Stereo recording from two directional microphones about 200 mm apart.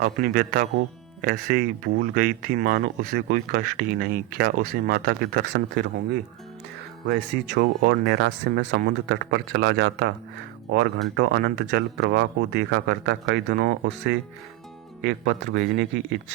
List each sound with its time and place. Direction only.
0.0 s speech: 50° right (ahead or behind)
7.1 s speech: 55° right (ahead or behind)